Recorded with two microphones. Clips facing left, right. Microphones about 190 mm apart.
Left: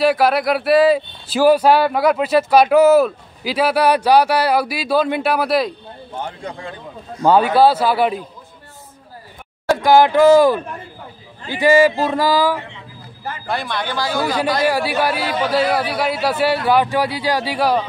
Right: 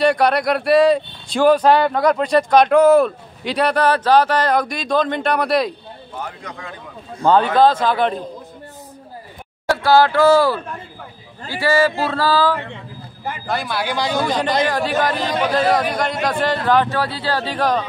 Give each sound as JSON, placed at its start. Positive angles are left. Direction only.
{"t": 0.0, "sound": "speech", "side_deg": 5}
{"t": 6.1, "sound": "a man's voice", "side_deg": 30}
{"t": 7.2, "sound": "a man's voice", "side_deg": 10}
{"t": 9.7, "sound": "a man's voice", "side_deg": 15}
{"t": 13.5, "sound": "speech", "side_deg": 0}
{"t": 13.8, "sound": "speech", "side_deg": -15}
{"t": 14.7, "sound": "a man's voice", "side_deg": 10}